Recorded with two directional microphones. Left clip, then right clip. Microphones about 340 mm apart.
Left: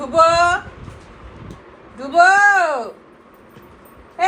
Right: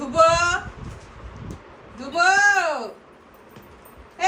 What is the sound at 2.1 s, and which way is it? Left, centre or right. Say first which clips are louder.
Speech: left 6 dB; right.